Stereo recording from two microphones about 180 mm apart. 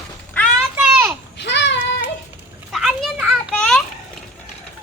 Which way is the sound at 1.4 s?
75° left (ahead or behind).